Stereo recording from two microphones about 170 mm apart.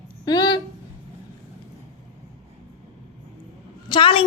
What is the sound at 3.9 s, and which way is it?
Speech, 30° left (ahead or behind).